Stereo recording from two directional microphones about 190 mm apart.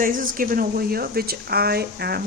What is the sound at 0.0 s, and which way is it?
A woman's voice, 45° right (ahead or behind).